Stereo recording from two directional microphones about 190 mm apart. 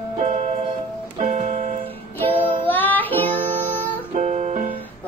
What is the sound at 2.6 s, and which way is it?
Music, 10° left (ahead or behind).